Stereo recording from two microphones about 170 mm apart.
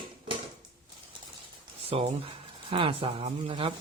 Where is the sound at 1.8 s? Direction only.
35° right (ahead or behind).